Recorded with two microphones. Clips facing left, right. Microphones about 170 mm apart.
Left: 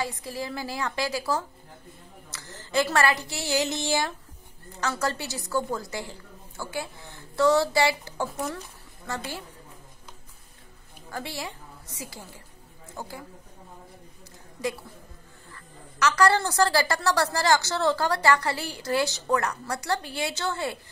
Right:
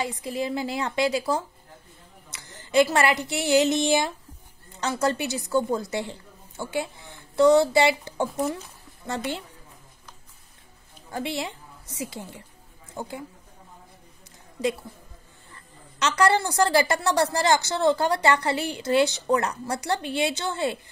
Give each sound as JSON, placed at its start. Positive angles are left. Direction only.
{"t": 0.0, "sound": "a woman's voice", "side_deg": -20}
{"t": 11.1, "sound": "a woman's voice", "side_deg": -20}
{"t": 15.5, "sound": "a woman's voice", "side_deg": -20}